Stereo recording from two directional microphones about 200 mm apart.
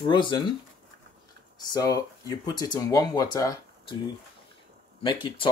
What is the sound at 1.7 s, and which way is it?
Speech, 20° left (ahead or behind).